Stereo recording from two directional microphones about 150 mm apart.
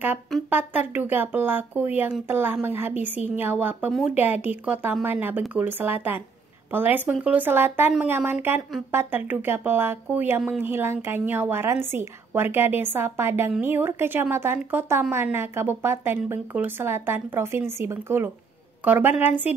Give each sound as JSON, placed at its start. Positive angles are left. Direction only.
{"t": 0.5, "sound": "a woman's voice", "side_deg": -15}